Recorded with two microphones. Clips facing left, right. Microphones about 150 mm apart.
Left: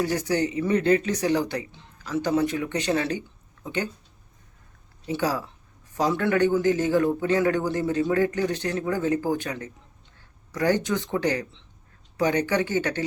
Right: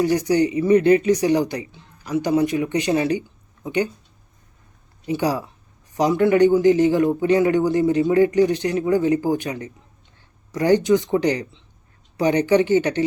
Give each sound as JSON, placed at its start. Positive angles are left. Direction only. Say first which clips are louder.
{"t": 0.0, "sound": "a man's voice", "louder": "right 6 dB", "side_deg": -15}
{"t": 5.0, "sound": "a man's voice", "louder": "right 4 dB", "side_deg": -15}